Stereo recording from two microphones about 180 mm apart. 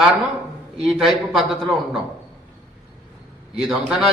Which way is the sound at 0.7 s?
5° right (ahead or behind).